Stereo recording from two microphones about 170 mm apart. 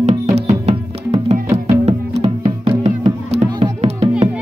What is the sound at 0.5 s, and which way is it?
Music, 40° right (ahead or behind).